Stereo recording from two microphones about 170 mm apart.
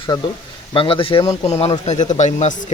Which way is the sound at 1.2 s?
20° left (ahead or behind).